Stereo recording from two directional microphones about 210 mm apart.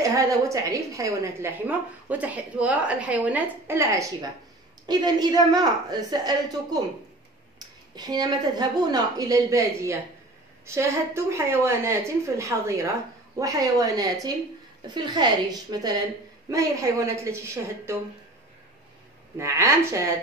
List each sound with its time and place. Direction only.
0.0 s a woman's voice: 15° right (ahead or behind)
19.3 s a woman's voice: 15° right (ahead or behind)